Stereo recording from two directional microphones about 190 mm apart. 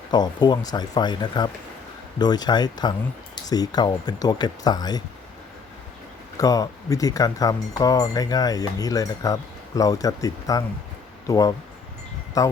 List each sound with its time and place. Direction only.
0.1 s speech: 20° left (ahead or behind)
6.3 s speech: 20° left (ahead or behind)